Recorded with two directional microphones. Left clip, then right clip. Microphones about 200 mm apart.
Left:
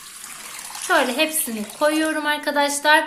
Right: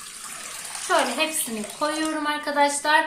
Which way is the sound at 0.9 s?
45° left (ahead or behind).